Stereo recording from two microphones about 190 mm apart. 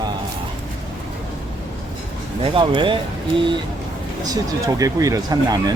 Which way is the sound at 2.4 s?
25° right (ahead or behind).